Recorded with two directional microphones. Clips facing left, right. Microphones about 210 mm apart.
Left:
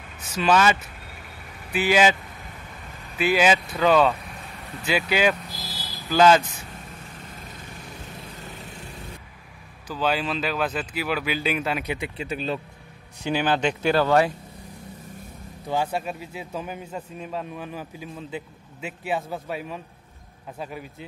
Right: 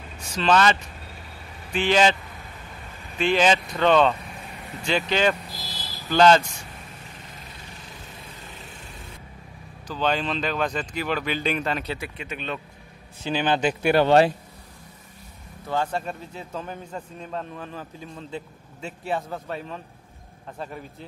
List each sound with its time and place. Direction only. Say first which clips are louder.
0.4 s a man's voice: even; 10° left (ahead or behind)
3.2 s a man's voice: even; 5° left (ahead or behind)
8.6 s light engine: left 3 dB; 40° left (ahead or behind)
9.8 s speech: even; 5° left (ahead or behind)
12.2 s speech: left 4 dB; 35° left (ahead or behind)
13.2 s a man's voice: even; 10° left (ahead or behind)
13.6 s speech: right 1 dB; 5° right (ahead or behind)
13.9 s speech: right 4 dB; 25° right (ahead or behind)
15.6 s a man's voice: left 1 dB; 10° left (ahead or behind)